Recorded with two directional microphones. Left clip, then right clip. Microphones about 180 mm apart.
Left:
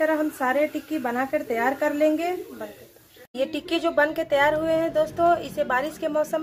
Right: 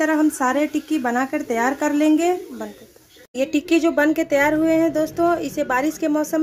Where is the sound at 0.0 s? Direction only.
70° right (ahead or behind).